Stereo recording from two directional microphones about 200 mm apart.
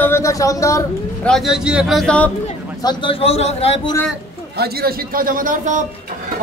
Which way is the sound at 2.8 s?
25° left (ahead or behind).